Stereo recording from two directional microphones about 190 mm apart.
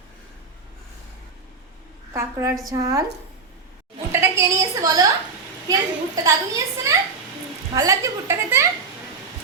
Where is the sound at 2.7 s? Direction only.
20° right (ahead or behind).